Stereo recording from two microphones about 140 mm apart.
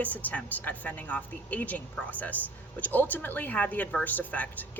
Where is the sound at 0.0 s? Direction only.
10° left (ahead or behind).